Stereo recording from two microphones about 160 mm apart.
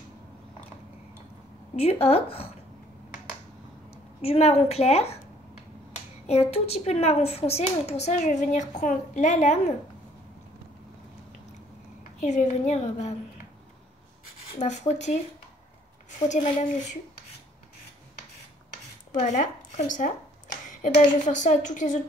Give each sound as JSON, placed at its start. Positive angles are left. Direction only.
{"t": 1.8, "sound": "a woman's voice", "side_deg": 40}
{"t": 4.2, "sound": "a woman's voice", "side_deg": 40}
{"t": 6.5, "sound": "speech", "side_deg": 40}
{"t": 12.2, "sound": "speech", "side_deg": 50}
{"t": 14.6, "sound": "speech", "side_deg": 45}
{"t": 16.3, "sound": "speech", "side_deg": 55}
{"t": 19.1, "sound": "speech", "side_deg": 50}
{"t": 21.3, "sound": "speech", "side_deg": 50}